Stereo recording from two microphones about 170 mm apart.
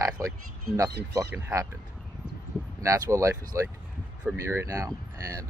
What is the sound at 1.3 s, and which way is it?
Speech, 15° right (ahead or behind).